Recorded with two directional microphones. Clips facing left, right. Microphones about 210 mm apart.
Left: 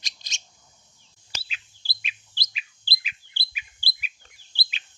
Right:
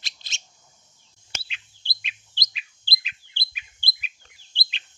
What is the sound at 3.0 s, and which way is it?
Bird, 10° left (ahead or behind).